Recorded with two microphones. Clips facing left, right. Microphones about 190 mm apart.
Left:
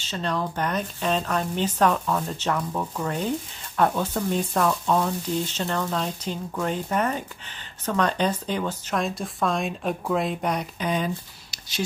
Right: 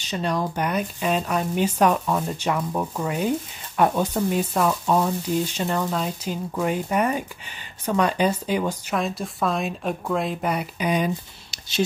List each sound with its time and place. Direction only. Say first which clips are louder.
0.0 s speech: right 3 dB; 15° right (ahead or behind)